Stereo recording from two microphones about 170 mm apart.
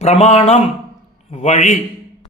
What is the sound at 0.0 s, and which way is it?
A man's voice, 40° left (ahead or behind).